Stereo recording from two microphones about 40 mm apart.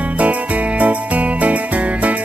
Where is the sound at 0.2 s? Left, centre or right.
Right.